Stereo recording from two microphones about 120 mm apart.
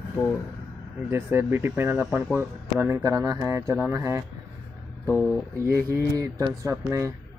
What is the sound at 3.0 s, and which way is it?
Speech, 30° right (ahead or behind).